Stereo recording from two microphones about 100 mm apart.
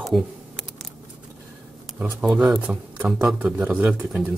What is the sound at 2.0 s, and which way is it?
Speech, 10° right (ahead or behind).